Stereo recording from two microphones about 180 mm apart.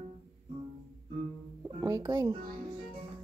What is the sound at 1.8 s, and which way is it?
Music, 20° right (ahead or behind).